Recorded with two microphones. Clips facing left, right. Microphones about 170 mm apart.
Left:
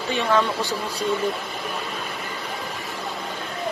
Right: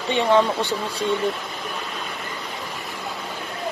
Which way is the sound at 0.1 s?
25° right (ahead or behind).